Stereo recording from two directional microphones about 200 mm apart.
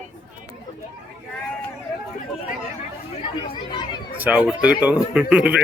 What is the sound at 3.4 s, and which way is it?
Speech, 25° left (ahead or behind).